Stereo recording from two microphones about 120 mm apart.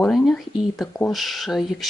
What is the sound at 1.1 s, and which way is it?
Speech, centre (ahead or behind).